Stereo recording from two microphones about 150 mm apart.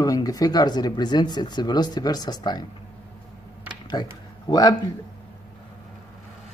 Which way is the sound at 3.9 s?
30° left (ahead or behind).